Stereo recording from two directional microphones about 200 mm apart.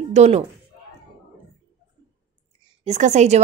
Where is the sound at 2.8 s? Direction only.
35° right (ahead or behind).